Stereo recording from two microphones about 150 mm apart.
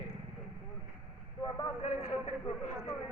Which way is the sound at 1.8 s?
40° left (ahead or behind).